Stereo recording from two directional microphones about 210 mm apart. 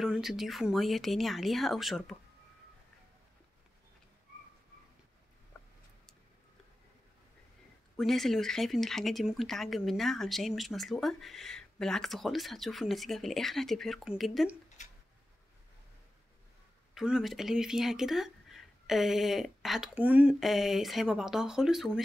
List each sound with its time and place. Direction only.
0.0 s speech: centre (ahead or behind)
8.0 s speech: centre (ahead or behind)
14.8 s a sound: 35° left (ahead or behind)
16.9 s speech: centre (ahead or behind)